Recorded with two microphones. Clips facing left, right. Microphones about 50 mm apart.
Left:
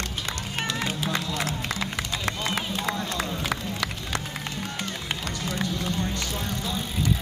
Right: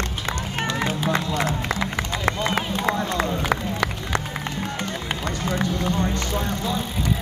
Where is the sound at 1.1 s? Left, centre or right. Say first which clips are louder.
Right 5 dB; right.